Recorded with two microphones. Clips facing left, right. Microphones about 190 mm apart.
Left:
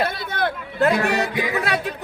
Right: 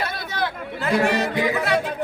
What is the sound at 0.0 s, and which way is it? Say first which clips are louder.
Chatter: left 3 dB; 55° left (ahead or behind).